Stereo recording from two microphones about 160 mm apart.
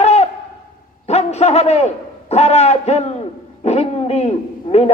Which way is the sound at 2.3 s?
40° left (ahead or behind).